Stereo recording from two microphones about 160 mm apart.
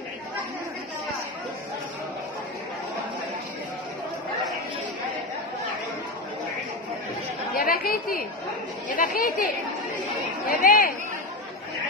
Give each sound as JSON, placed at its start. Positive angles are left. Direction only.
{"t": 7.5, "sound": "chatter", "side_deg": 60}
{"t": 8.8, "sound": "speech", "side_deg": 60}
{"t": 10.5, "sound": "speech", "side_deg": 55}